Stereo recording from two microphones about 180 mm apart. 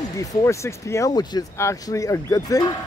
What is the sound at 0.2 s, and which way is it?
Speech, 20° left (ahead or behind).